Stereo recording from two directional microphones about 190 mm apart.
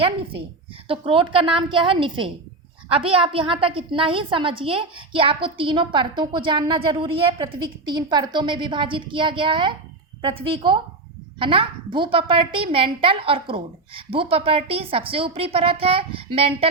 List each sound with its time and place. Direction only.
0.0 s a woman's voice: 30° right (ahead or behind)